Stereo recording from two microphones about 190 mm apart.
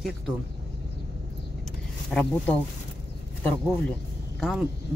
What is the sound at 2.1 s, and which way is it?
Speech, 10° left (ahead or behind).